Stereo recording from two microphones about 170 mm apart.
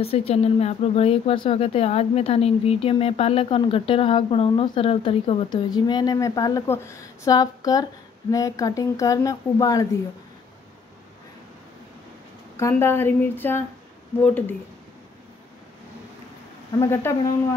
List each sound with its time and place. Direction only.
0.0 s speech: 35° left (ahead or behind)
12.5 s a woman's voice: 15° left (ahead or behind)
16.8 s a woman's voice: 15° left (ahead or behind)